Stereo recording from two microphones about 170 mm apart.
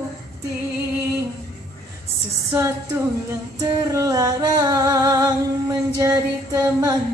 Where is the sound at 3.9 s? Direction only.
20° right (ahead or behind).